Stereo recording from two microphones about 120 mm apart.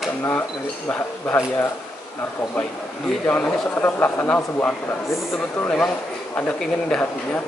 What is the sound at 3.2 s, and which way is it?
Speech, 15° left (ahead or behind).